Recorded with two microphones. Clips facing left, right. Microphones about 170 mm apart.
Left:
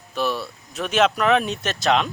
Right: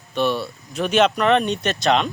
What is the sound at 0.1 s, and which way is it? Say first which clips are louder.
Speech: right 3 dB; centre (ahead or behind).